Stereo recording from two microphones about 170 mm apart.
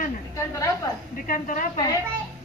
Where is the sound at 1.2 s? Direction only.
55° left (ahead or behind).